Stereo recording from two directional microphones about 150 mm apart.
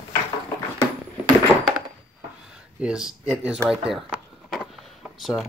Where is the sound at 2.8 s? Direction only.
5° right (ahead or behind).